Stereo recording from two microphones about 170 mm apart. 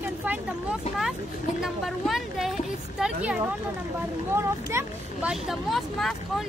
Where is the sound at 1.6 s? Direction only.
Centre (ahead or behind).